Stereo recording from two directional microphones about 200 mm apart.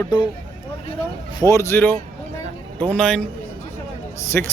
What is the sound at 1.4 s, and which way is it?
A man's voice, 15° left (ahead or behind).